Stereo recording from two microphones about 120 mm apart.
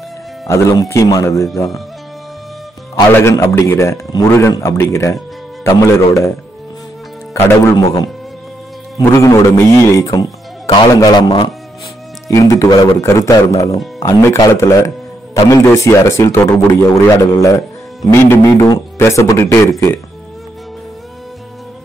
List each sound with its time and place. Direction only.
0.5 s speech: 25° left (ahead or behind)
3.2 s speech: 25° left (ahead or behind)
7.3 s a man's voice: 25° left (ahead or behind)
12.3 s speech: 25° left (ahead or behind)